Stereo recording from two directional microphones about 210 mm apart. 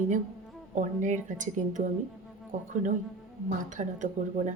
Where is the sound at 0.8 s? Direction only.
35° right (ahead or behind).